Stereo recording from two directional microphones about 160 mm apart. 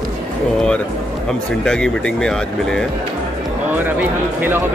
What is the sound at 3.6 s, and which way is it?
Speech, 10° right (ahead or behind).